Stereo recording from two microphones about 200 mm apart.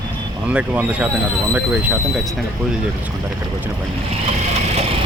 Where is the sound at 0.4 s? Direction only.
5° right (ahead or behind).